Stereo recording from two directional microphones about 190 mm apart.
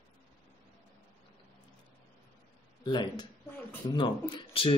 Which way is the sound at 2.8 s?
25° left (ahead or behind).